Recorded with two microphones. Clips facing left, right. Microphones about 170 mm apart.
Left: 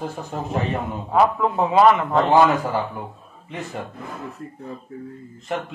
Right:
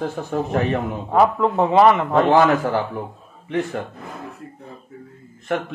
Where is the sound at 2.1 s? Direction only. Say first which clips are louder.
Right 1 dB; 60° right (ahead or behind).